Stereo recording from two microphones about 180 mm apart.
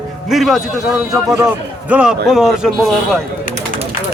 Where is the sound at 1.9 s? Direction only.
5° right (ahead or behind).